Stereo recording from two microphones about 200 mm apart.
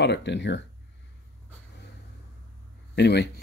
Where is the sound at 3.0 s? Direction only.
55° left (ahead or behind).